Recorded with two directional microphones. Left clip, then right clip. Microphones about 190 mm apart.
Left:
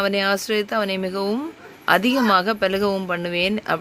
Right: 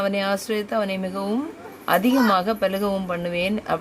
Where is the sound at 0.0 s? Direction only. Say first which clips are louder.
Left 3 dB; 20° left (ahead or behind).